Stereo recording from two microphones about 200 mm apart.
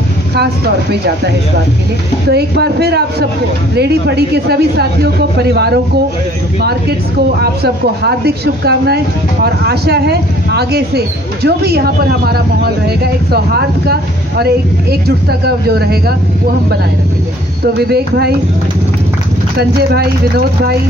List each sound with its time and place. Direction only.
2.2 s speech: 55° right (ahead or behind)
7.6 s speech: 55° right (ahead or behind)
17.7 s speech: 55° right (ahead or behind)
19.9 s speech: 50° right (ahead or behind)